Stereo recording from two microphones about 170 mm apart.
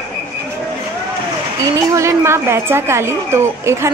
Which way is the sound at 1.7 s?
20° right (ahead or behind).